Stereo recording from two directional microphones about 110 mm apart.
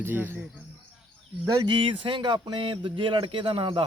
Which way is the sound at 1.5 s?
40° right (ahead or behind).